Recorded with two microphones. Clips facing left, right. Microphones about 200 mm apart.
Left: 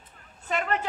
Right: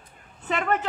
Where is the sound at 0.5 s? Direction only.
55° right (ahead or behind).